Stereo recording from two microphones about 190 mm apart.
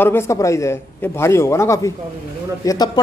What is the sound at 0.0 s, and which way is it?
Speech, 15° left (ahead or behind).